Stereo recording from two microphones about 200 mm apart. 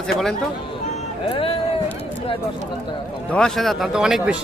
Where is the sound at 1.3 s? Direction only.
25° left (ahead or behind).